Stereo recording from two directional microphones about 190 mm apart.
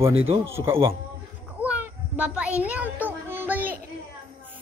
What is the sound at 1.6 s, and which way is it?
Child singing, 5° right (ahead or behind).